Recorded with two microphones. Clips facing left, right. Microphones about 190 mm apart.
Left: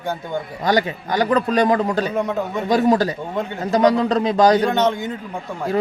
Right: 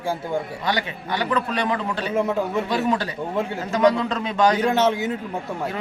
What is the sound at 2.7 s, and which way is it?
A man's voice, 40° left (ahead or behind).